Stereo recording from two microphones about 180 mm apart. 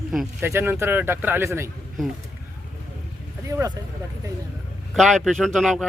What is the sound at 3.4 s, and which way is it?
Speech, 15° right (ahead or behind).